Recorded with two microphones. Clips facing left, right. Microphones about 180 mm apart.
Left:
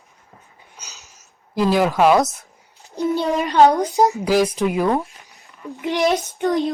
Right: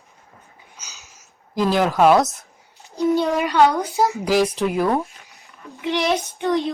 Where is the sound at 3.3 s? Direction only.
40° left (ahead or behind).